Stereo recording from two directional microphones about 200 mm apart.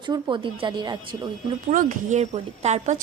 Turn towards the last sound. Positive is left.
turn(degrees=-35)  # may be behind; listen again after turning